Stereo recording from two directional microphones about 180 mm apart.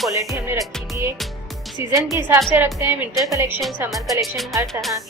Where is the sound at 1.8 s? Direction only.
15° right (ahead or behind).